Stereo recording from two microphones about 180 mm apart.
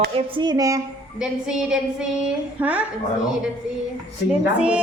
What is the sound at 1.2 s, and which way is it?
A woman's voice, 5° right (ahead or behind).